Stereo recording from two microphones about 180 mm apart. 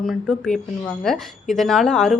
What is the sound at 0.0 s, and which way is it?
A woman's voice, centre (ahead or behind).